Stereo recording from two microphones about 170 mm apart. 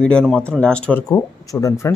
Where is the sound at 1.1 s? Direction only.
20° left (ahead or behind).